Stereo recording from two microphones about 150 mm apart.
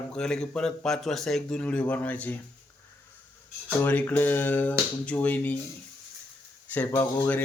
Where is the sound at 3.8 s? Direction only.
10° left (ahead or behind).